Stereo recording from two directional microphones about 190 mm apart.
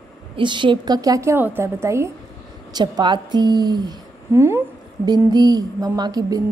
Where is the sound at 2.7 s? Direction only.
20° right (ahead or behind).